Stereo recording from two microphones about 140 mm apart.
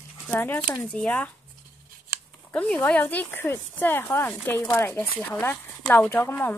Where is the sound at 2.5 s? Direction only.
10° left (ahead or behind).